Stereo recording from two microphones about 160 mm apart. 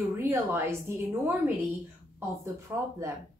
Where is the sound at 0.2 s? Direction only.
15° right (ahead or behind).